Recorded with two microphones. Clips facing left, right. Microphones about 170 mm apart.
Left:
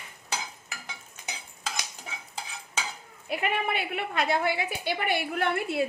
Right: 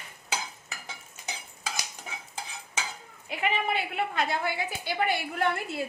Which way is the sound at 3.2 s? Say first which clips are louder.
Even; 55° left (ahead or behind).